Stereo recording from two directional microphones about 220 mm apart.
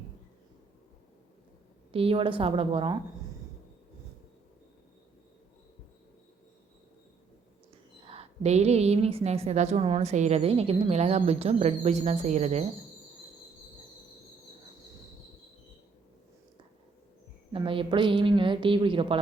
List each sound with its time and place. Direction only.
1.9 s a woman's voice: 25° right (ahead or behind)
8.0 s a woman's voice: 25° right (ahead or behind)
17.5 s a woman's voice: 25° right (ahead or behind)